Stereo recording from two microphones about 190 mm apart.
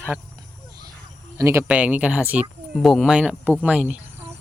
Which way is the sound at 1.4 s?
15° right (ahead or behind).